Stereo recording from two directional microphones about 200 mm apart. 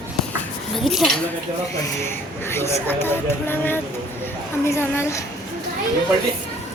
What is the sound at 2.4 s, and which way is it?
Speech, 10° left (ahead or behind).